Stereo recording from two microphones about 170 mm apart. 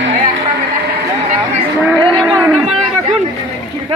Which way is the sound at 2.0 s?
Centre (ahead or behind).